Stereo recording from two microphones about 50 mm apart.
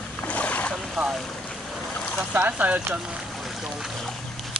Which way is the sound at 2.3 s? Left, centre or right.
Right.